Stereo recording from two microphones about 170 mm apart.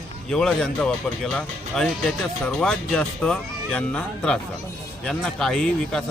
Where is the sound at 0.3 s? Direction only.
5° left (ahead or behind).